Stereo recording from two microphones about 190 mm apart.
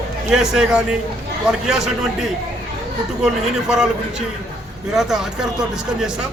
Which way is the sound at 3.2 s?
5° right (ahead or behind).